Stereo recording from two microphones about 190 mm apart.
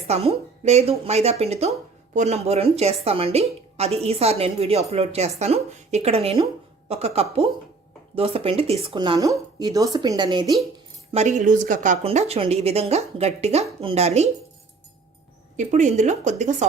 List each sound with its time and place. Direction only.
0.1 s a woman's voice: 35° right (ahead or behind)
11.1 s a woman's voice: 40° right (ahead or behind)
15.5 s a woman's voice: 40° right (ahead or behind)